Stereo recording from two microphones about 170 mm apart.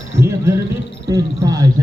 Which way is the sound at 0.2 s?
15° right (ahead or behind).